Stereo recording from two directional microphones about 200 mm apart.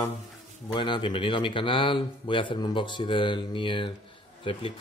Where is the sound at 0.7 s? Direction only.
25° left (ahead or behind).